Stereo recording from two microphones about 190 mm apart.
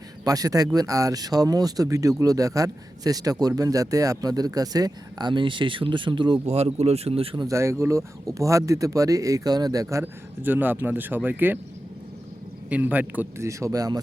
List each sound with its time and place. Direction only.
0.3 s speech: 20° right (ahead or behind)
7.4 s speech: 15° right (ahead or behind)
12.7 s speech: 10° right (ahead or behind)